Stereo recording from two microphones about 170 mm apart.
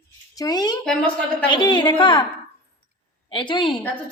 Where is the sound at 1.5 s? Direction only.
25° left (ahead or behind).